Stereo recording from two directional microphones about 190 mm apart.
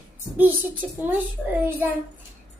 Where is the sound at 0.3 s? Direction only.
10° right (ahead or behind).